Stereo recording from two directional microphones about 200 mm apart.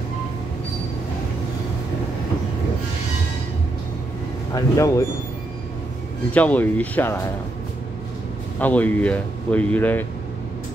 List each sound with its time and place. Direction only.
4.6 s speech: 15° left (ahead or behind)
6.3 s speech: 5° left (ahead or behind)
8.5 s speech: 5° left (ahead or behind)